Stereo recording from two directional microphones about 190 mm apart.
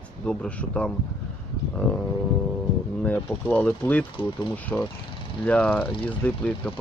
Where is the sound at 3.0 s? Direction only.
10° left (ahead or behind).